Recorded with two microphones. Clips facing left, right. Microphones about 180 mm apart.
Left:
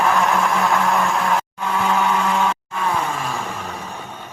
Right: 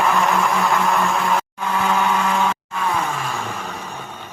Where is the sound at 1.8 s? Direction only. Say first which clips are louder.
Even; centre (ahead or behind).